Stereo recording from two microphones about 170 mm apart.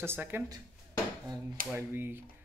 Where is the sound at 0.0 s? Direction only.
15° right (ahead or behind).